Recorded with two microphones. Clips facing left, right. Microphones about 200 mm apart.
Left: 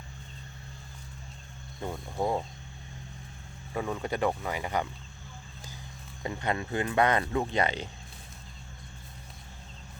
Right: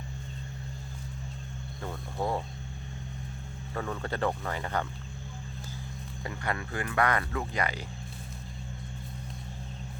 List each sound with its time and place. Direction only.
1.8 s speech: 15° left (ahead or behind)
3.8 s speech: 15° left (ahead or behind)
6.2 s speech: 20° left (ahead or behind)